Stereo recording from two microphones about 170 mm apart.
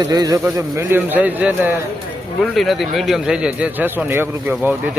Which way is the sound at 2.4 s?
Centre (ahead or behind).